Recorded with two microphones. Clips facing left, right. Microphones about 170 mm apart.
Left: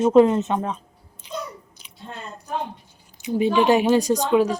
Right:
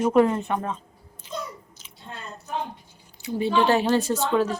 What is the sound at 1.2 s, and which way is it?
Chewing, 15° left (ahead or behind).